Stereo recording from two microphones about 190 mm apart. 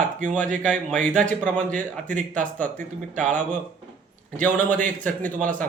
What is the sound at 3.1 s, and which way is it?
Speech, 40° right (ahead or behind).